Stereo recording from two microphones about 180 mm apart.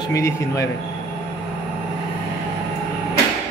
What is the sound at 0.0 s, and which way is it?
Speech, 15° left (ahead or behind).